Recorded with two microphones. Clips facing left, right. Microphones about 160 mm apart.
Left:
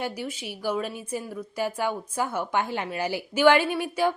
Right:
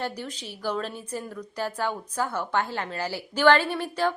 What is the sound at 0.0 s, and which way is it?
A woman's voice, 15° left (ahead or behind).